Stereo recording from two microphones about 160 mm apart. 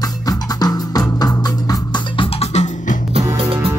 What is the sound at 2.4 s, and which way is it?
Music, 45° left (ahead or behind).